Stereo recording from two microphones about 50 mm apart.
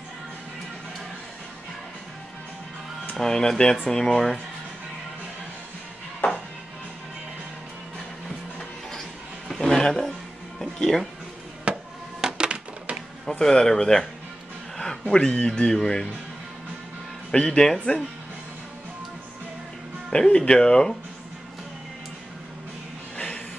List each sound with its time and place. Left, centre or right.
3.2 s speech: centre
6.2 s music: left
9.5 s a sound: centre
10.6 s music: centre
11.7 s music: right
13.2 s speech: centre
14.8 s a sound: centre
15.1 s speech: centre
17.3 s speech: centre
20.1 s speech: centre
23.1 s a sound: left